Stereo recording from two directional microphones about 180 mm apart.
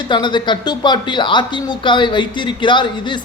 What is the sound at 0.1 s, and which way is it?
Speech, 25° left (ahead or behind).